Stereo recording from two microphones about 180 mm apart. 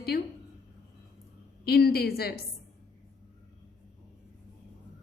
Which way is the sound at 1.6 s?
60° left (ahead or behind).